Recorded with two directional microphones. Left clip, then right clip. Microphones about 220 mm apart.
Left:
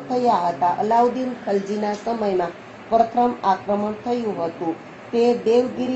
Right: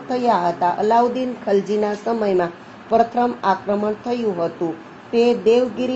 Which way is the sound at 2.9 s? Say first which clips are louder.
Right 1 dB; 50° right (ahead or behind).